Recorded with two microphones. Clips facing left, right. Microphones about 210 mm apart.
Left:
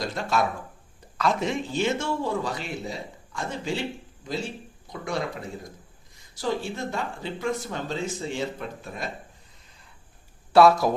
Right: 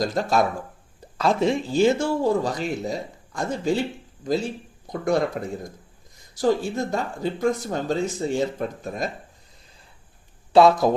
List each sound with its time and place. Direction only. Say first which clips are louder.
0.0 s a man's voice: right 5 dB; 40° right (ahead or behind)
6.4 s a man's voice: right 7 dB; 40° right (ahead or behind)
10.5 s speech: right 2 dB; 20° right (ahead or behind)